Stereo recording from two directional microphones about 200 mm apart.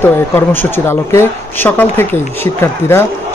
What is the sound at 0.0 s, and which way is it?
Speech, 10° left (ahead or behind).